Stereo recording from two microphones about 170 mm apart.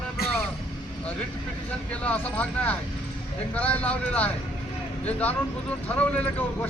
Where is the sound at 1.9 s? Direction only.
10° left (ahead or behind).